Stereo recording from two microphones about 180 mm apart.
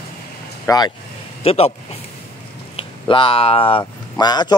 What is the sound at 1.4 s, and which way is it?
Speech, 35° left (ahead or behind).